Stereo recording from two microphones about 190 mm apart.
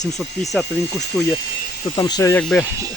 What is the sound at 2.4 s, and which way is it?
Speech, 5° left (ahead or behind).